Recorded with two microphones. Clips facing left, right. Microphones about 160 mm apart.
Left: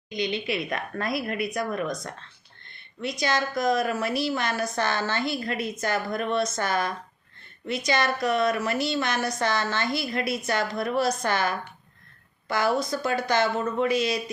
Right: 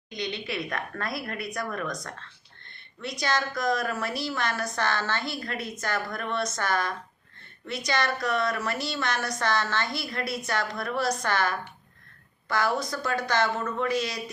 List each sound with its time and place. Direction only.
0.4 s a woman's voice: 15° left (ahead or behind)
12.9 s a woman's voice: 25° left (ahead or behind)